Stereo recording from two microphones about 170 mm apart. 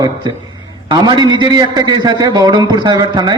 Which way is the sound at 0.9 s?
25° right (ahead or behind).